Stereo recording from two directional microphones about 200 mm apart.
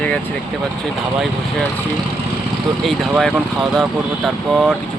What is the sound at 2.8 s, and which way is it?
Speech, centre (ahead or behind).